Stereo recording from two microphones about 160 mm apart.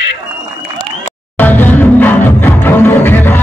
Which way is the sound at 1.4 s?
10° left (ahead or behind).